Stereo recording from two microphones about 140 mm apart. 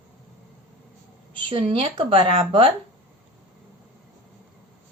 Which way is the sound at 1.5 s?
40° right (ahead or behind).